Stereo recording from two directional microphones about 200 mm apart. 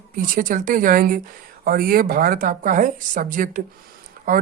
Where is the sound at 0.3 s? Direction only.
40° right (ahead or behind).